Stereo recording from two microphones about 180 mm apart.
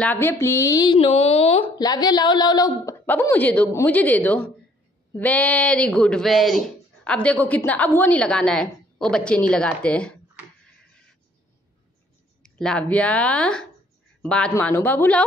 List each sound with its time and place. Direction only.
0.0 s speech: 10° left (ahead or behind); by 1.7 s 35° left (ahead or behind)
1.8 s a woman's voice: 20° left (ahead or behind); by 10.1 s 5° left (ahead or behind)
12.4 s a woman's voice: 5° left (ahead or behind)